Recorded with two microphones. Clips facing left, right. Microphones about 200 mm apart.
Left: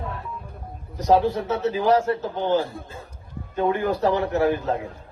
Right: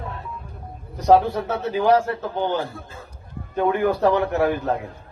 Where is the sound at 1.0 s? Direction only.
60° right (ahead or behind).